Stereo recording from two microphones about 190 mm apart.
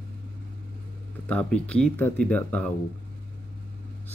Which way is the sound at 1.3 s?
5° left (ahead or behind).